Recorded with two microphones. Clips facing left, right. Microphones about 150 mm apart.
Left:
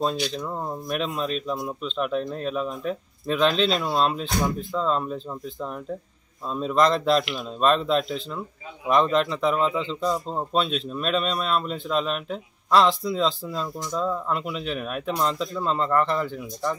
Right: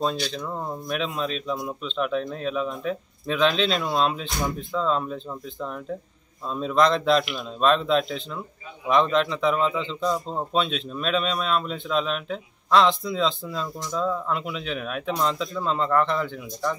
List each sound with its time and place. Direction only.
0.3 s a man's voice: 5° left (ahead or behind)